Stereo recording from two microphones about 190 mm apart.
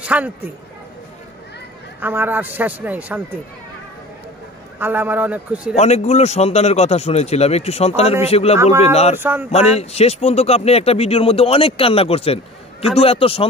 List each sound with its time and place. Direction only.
0.0 s speech: 10° right (ahead or behind)
2.0 s a man's voice: 10° right (ahead or behind)
4.7 s a man's voice: 10° right (ahead or behind)
5.8 s speech: 35° left (ahead or behind)
9.1 s a man's voice: 10° right (ahead or behind)
9.5 s speech: 35° left (ahead or behind)